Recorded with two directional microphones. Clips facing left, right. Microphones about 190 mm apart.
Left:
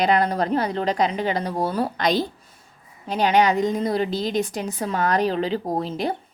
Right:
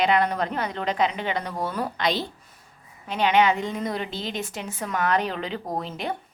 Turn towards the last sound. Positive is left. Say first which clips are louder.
# left 5 dB
turn(degrees=35)  # may be behind; listen again after turning